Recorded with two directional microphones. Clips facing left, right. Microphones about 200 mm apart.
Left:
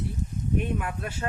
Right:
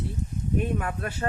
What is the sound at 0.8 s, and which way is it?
Speech, 40° right (ahead or behind).